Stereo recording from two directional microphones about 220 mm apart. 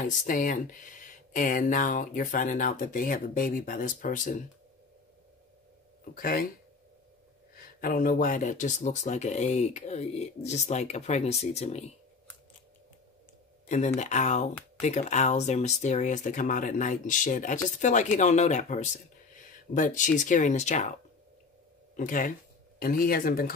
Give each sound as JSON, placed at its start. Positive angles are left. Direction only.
{"t": 0.0, "sound": "speech", "side_deg": 35}
{"t": 6.1, "sound": "speech", "side_deg": 40}
{"t": 7.5, "sound": "speech", "side_deg": 40}
{"t": 13.7, "sound": "speech", "side_deg": 30}
{"t": 21.9, "sound": "speech", "side_deg": 35}